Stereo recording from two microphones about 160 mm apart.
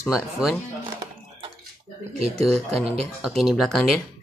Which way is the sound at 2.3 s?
Centre (ahead or behind).